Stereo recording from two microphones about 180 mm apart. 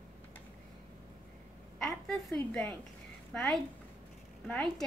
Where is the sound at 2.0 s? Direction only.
5° left (ahead or behind).